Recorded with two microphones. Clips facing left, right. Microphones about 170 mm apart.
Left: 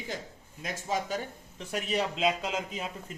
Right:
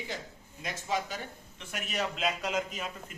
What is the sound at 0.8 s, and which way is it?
Speech, 45° left (ahead or behind).